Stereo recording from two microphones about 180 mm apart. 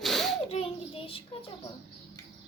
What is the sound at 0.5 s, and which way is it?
Speech, 30° left (ahead or behind).